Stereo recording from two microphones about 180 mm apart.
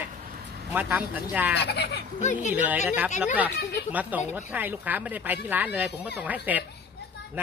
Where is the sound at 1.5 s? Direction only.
65° left (ahead or behind).